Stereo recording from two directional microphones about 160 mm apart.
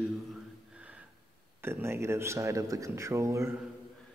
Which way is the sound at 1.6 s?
15° right (ahead or behind).